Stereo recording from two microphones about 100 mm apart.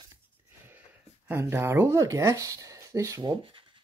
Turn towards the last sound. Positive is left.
turn(degrees=-60)  # may be behind; listen again after turning